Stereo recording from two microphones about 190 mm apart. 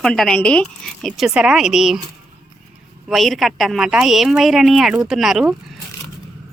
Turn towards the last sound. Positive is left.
turn(degrees=0)  # may be behind; listen again after turning